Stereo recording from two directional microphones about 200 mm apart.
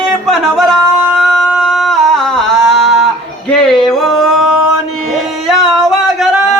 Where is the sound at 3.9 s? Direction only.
Centre (ahead or behind).